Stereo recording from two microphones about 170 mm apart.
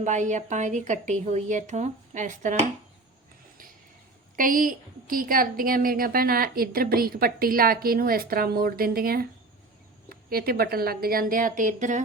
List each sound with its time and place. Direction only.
0.0 s a woman's voice: 45° right (ahead or behind)
4.4 s a woman's voice: 55° right (ahead or behind)